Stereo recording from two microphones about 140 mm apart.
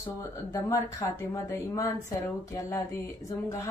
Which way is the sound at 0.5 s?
25° left (ahead or behind).